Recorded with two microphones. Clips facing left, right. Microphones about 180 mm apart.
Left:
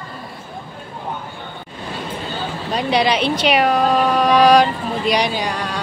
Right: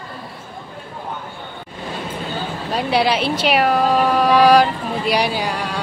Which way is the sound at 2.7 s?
5° right (ahead or behind).